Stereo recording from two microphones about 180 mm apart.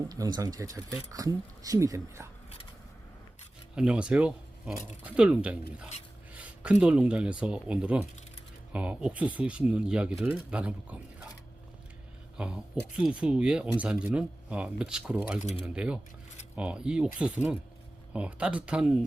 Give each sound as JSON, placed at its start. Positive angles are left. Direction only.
{"t": 0.1, "sound": "speech", "side_deg": -20}
{"t": 3.8, "sound": "speech", "side_deg": -5}
{"t": 12.4, "sound": "speech", "side_deg": -5}